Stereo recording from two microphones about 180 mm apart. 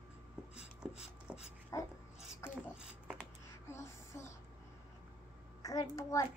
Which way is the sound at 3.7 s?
15° left (ahead or behind).